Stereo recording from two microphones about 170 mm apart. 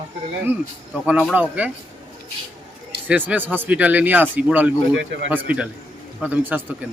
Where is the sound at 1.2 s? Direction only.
5° right (ahead or behind).